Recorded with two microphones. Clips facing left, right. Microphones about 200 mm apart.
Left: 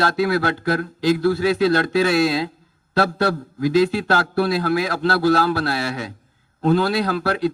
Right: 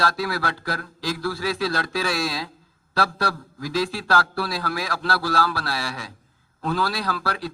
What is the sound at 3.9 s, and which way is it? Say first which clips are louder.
Speech: left 4 dB; 20° left (ahead or behind).